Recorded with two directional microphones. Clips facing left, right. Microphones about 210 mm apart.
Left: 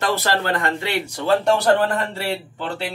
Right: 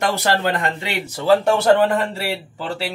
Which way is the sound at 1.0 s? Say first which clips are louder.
Right 3 dB; 5° right (ahead or behind).